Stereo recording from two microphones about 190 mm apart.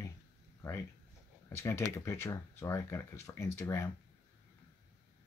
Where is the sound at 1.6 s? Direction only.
15° left (ahead or behind).